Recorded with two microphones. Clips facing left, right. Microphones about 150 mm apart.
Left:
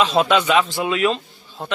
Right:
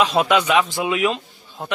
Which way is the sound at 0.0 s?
10° right (ahead or behind).